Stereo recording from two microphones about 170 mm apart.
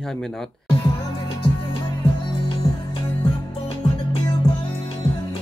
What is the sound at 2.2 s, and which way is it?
Music, 30° left (ahead or behind).